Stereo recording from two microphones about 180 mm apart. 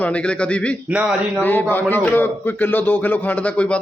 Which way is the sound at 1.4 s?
10° left (ahead or behind).